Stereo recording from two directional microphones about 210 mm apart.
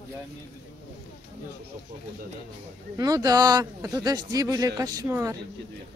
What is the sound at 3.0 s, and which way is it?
Speech, 15° right (ahead or behind).